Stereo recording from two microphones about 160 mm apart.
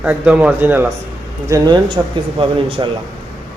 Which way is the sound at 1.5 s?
25° right (ahead or behind).